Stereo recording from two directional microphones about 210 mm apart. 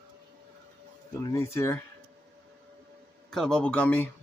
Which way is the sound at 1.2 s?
15° left (ahead or behind).